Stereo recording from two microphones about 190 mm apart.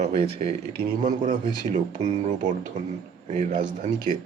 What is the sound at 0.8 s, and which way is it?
Speech, 45° right (ahead or behind).